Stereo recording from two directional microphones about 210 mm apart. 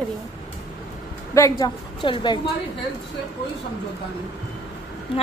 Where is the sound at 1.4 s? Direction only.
15° left (ahead or behind).